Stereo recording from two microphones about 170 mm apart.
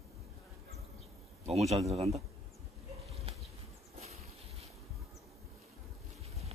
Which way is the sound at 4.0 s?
40° right (ahead or behind).